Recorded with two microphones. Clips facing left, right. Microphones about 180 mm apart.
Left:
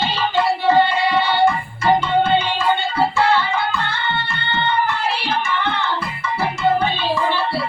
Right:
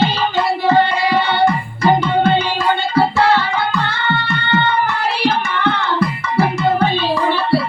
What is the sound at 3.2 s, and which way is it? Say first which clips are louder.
Music: right 2 dB; 40° right (ahead or behind).